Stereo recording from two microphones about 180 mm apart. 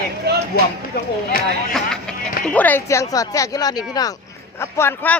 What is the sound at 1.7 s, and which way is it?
Speech, 5° left (ahead or behind).